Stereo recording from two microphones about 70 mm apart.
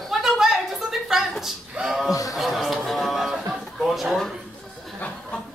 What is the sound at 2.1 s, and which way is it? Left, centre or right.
Speech, left.